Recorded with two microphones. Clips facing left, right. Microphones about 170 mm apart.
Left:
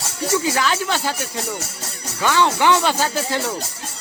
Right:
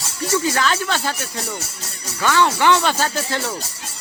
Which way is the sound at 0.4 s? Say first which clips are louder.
Even; 15° left (ahead or behind).